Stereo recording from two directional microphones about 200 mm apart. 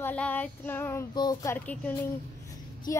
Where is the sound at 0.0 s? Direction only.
10° left (ahead or behind).